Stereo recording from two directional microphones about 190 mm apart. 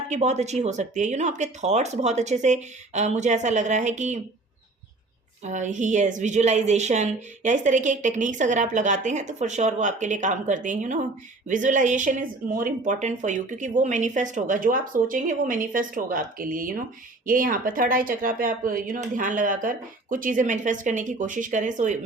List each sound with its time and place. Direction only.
0.1 s a woman's voice: 35° right (ahead or behind)
5.4 s a woman's voice: 40° right (ahead or behind)